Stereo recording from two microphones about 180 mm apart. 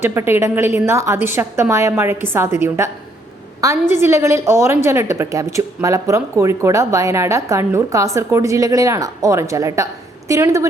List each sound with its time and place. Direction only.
0.0 s a woman's voice: 15° right (ahead or behind)